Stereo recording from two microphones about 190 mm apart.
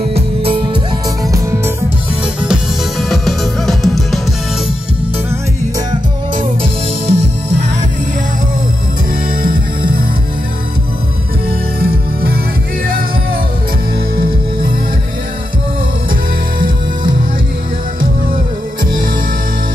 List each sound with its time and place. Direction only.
0.1 s music: 30° right (ahead or behind)
2.4 s music: centre (ahead or behind)
6.6 s music: 35° right (ahead or behind)
9.4 s music: 50° right (ahead or behind)
11.8 s music: 55° right (ahead or behind)
14.1 s music: 50° right (ahead or behind)